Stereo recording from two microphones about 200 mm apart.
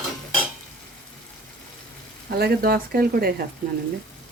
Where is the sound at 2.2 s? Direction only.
50° right (ahead or behind).